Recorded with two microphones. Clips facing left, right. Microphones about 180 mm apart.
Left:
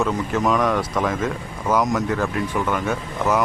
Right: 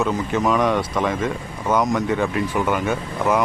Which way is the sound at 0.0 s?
Centre (ahead or behind).